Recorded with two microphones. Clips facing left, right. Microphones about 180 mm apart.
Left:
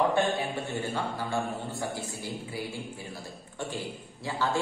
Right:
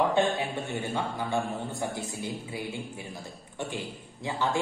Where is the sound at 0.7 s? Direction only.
20° right (ahead or behind).